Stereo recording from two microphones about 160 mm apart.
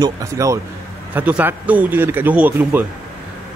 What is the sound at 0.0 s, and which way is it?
A man's voice, 20° right (ahead or behind).